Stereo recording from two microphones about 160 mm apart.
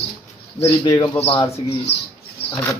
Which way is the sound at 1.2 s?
35° left (ahead or behind).